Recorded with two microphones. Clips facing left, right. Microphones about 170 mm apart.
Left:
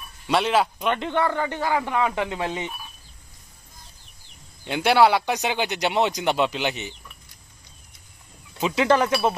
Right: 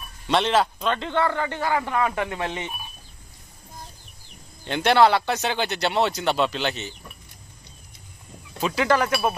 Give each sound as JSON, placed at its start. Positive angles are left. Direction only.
{"t": 0.3, "sound": "a man's voice", "side_deg": 10}
{"t": 4.6, "sound": "a man's voice", "side_deg": 10}
{"t": 8.5, "sound": "speech", "side_deg": 20}